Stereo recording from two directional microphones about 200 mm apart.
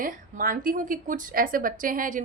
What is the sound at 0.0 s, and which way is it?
A woman's voice, 45° right (ahead or behind).